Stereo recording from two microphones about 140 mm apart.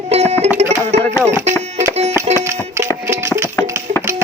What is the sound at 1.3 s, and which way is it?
Music, 20° right (ahead or behind).